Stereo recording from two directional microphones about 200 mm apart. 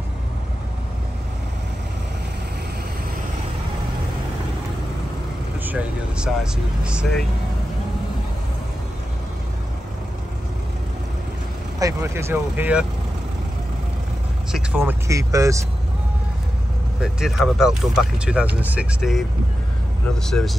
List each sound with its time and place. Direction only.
5.7 s speech: 5° right (ahead or behind)
11.8 s speech: 15° right (ahead or behind)
14.5 s speech: 10° right (ahead or behind)
17.0 s speech: 5° right (ahead or behind)
20.2 s speech: centre (ahead or behind)